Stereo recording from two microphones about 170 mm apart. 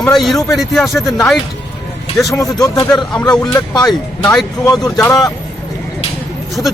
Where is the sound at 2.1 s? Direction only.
20° left (ahead or behind).